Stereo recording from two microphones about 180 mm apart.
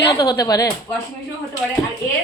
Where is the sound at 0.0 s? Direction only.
20° left (ahead or behind).